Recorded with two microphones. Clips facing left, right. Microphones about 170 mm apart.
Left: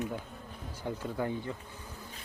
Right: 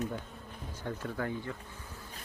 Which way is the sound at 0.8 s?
15° left (ahead or behind).